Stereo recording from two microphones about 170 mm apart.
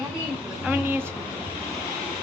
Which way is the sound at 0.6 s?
10° right (ahead or behind).